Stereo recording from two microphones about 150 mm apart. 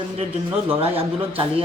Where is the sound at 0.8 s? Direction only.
40° right (ahead or behind).